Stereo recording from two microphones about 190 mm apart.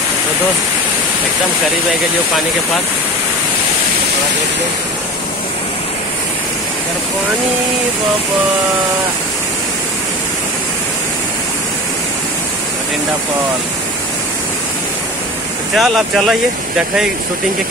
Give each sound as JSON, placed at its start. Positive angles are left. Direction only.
{"t": 15.7, "sound": "speech", "side_deg": 0}